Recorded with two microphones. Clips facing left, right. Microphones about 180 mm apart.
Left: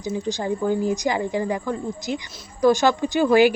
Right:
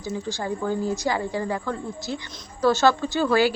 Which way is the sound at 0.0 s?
20° left (ahead or behind).